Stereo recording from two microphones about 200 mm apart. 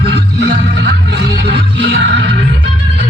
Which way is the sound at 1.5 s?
55° right (ahead or behind).